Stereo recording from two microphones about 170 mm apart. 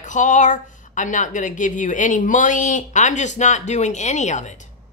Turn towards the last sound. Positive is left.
turn(degrees=45)  # may be behind; listen again after turning